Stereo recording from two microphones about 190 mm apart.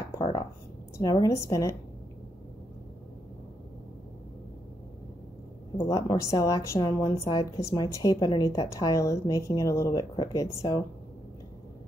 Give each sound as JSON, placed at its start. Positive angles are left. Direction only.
{"t": 0.2, "sound": "a sound", "side_deg": 25}
{"t": 0.9, "sound": "a woman's voice", "side_deg": 20}
{"t": 5.8, "sound": "a woman's voice", "side_deg": 15}